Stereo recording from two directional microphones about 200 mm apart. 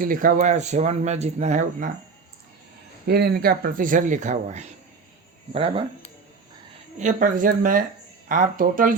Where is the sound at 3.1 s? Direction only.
50° right (ahead or behind); by 5.8 s 25° right (ahead or behind).